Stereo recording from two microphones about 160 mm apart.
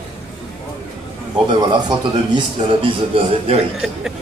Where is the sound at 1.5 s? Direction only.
30° right (ahead or behind).